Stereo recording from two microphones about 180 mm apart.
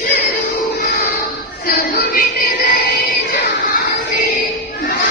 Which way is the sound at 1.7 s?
55° left (ahead or behind).